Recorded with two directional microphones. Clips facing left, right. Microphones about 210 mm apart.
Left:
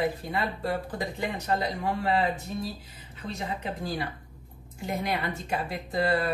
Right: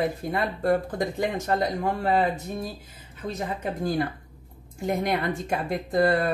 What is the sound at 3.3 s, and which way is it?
Speech, 50° right (ahead or behind).